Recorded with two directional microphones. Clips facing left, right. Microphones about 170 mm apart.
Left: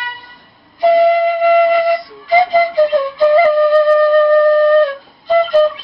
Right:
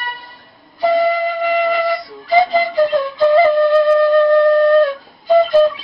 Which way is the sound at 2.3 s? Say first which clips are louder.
Left 2 dB; 20° left (ahead or behind).